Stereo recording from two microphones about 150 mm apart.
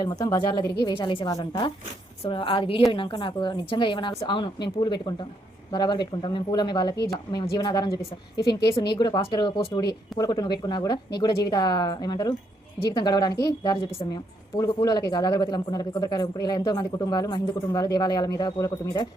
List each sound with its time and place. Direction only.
0.0 s speech: 25° left (ahead or behind)
0.9 s a woman's voice: 30° left (ahead or behind)
9.0 s speech: 30° left (ahead or behind)